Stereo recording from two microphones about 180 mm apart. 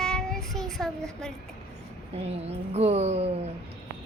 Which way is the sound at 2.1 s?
35° right (ahead or behind).